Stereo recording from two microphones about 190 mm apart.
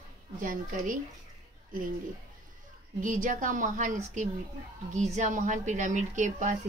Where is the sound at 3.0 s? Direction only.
40° right (ahead or behind).